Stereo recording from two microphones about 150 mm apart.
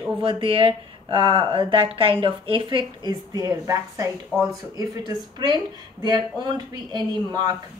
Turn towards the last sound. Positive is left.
turn(degrees=-30)  # may be behind; listen again after turning